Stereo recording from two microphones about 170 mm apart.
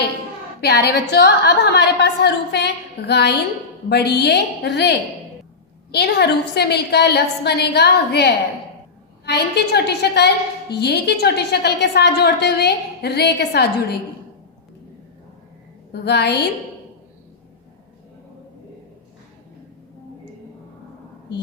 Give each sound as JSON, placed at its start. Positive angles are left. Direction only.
{"t": 0.6, "sound": "a woman's voice", "side_deg": 75}
{"t": 15.9, "sound": "a woman's voice", "side_deg": 75}